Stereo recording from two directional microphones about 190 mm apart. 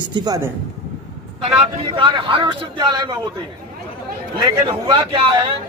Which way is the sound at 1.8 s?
25° right (ahead or behind).